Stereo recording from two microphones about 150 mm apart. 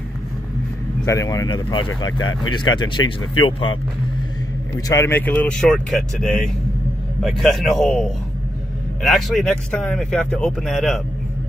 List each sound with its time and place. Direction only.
1.0 s speech: 20° left (ahead or behind)
4.7 s a man's voice: 20° left (ahead or behind); by 10.9 s centre (ahead or behind)